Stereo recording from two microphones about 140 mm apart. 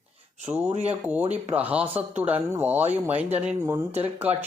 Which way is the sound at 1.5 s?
10° right (ahead or behind).